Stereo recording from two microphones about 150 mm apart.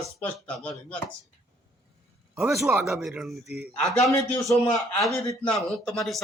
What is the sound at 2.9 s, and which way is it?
Speech, centre (ahead or behind).